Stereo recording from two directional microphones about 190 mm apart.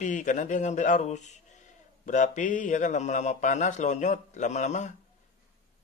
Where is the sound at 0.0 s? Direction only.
40° left (ahead or behind).